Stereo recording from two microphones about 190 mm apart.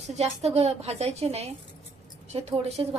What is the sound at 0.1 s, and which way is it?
A woman's voice, 35° right (ahead or behind).